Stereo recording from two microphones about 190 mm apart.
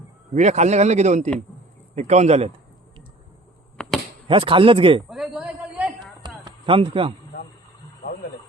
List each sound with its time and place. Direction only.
0.3 s speech: 35° right (ahead or behind)
4.3 s a man's voice: 25° right (ahead or behind)
5.0 s a sound: centre (ahead or behind)
6.2 s run: 25° right (ahead or behind)